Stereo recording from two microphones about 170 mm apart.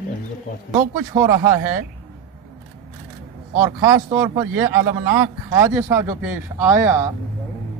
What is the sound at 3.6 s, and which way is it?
Speech, 20° right (ahead or behind).